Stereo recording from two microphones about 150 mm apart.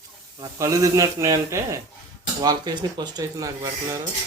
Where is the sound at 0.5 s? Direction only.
20° right (ahead or behind).